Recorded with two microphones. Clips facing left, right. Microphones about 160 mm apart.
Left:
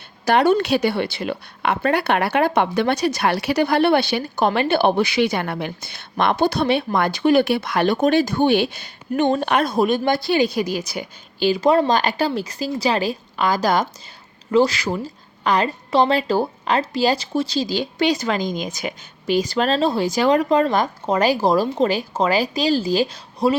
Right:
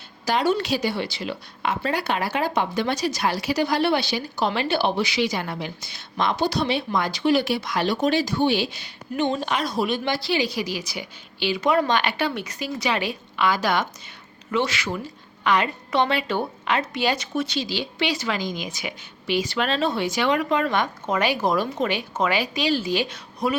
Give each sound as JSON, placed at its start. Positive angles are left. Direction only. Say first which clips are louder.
{"t": 0.3, "sound": "a woman's voice", "louder": "left 6 dB", "side_deg": 60}